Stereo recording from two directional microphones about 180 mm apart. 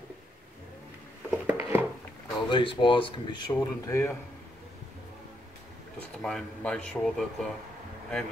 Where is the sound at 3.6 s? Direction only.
15° left (ahead or behind).